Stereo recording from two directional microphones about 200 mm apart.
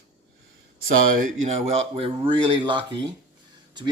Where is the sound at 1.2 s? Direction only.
35° right (ahead or behind).